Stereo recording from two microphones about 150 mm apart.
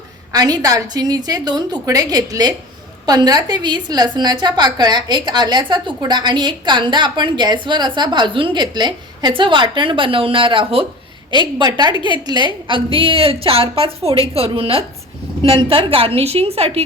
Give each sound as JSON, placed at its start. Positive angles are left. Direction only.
{"t": 0.3, "sound": "a woman's voice", "side_deg": -25}